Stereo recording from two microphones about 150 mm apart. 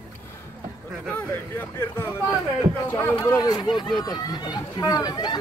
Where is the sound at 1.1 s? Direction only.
15° left (ahead or behind).